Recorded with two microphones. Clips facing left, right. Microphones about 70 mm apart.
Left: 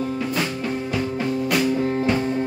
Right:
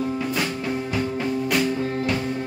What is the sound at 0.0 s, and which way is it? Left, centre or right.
Music, centre.